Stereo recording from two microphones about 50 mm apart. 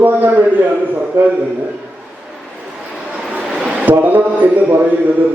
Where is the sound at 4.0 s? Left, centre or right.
Right.